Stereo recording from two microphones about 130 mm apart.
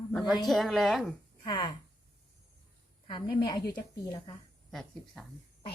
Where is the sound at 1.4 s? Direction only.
35° left (ahead or behind).